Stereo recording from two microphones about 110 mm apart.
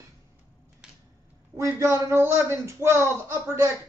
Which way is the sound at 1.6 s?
25° right (ahead or behind).